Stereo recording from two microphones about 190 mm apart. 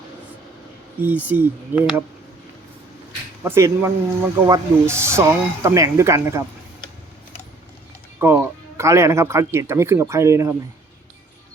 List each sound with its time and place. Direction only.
1.0 s speech: 10° right (ahead or behind)
3.4 s speech: 10° right (ahead or behind)
8.2 s speech: 10° right (ahead or behind)